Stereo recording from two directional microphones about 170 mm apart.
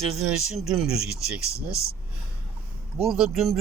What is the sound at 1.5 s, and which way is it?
Speech, 15° left (ahead or behind).